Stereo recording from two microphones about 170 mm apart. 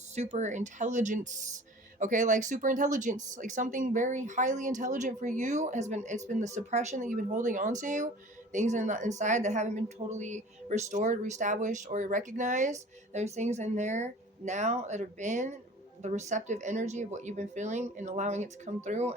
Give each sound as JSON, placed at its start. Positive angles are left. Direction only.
{"t": 0.2, "sound": "speech", "side_deg": -45}